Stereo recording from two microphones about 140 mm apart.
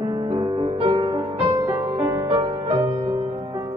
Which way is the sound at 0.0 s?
35° right (ahead or behind).